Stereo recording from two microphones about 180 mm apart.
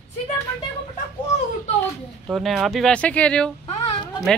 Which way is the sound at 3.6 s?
35° left (ahead or behind).